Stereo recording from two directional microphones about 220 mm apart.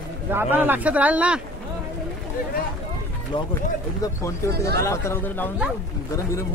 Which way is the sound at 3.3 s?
20° left (ahead or behind).